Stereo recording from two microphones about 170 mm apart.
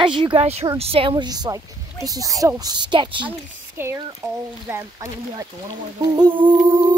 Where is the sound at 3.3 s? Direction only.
15° right (ahead or behind).